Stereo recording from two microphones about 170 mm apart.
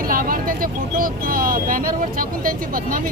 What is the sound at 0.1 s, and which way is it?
Speech, 55° right (ahead or behind).